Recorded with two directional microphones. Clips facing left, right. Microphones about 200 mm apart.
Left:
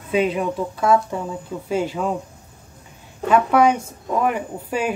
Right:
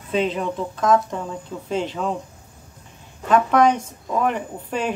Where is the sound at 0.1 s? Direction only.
10° left (ahead or behind).